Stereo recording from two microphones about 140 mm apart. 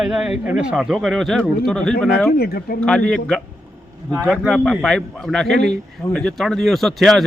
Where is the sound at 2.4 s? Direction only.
90° left.